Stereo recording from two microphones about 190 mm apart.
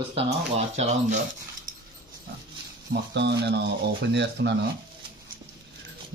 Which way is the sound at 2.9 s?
65° right (ahead or behind).